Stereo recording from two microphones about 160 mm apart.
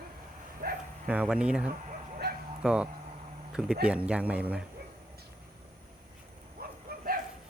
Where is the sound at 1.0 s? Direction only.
5° right (ahead or behind).